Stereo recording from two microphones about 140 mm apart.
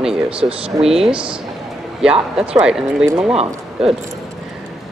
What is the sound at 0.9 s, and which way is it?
Speech, 5° right (ahead or behind).